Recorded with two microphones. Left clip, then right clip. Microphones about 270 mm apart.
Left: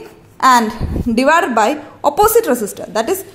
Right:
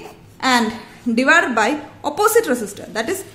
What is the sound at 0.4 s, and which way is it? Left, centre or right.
A woman's voice, centre.